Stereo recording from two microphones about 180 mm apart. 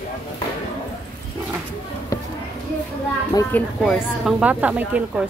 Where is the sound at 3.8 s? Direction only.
5° right (ahead or behind).